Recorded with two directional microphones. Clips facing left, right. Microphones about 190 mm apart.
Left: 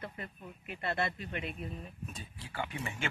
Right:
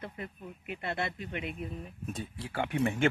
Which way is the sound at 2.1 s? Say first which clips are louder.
Right 6 dB; 65° right (ahead or behind).